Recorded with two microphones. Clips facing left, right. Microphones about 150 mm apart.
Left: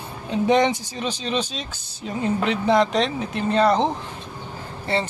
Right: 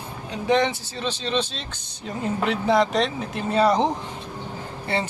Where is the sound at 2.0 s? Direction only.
5° right (ahead or behind).